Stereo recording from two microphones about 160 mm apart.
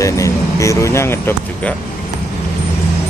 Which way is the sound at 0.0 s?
20° left (ahead or behind).